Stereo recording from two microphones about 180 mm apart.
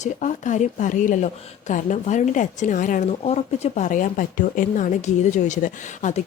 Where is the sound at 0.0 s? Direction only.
40° left (ahead or behind).